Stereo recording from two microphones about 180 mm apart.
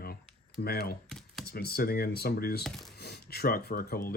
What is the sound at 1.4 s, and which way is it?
Speech, 60° left (ahead or behind).